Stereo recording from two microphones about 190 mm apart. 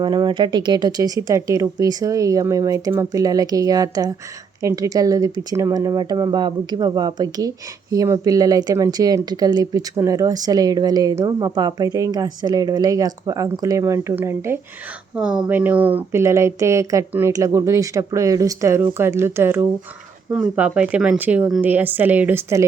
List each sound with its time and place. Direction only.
0.0 s speech: 25° right (ahead or behind)